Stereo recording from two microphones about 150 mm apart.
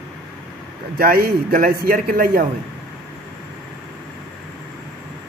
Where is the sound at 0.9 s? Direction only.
80° right.